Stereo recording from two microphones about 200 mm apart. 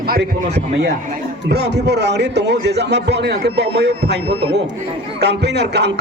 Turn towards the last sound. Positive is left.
turn(degrees=-55)  # may be behind; listen again after turning